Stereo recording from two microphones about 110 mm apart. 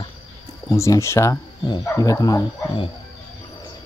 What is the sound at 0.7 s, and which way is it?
Speech, 25° left (ahead or behind).